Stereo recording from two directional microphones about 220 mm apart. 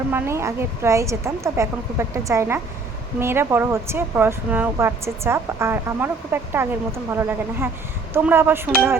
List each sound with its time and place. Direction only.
0.1 s speech: 10° right (ahead or behind)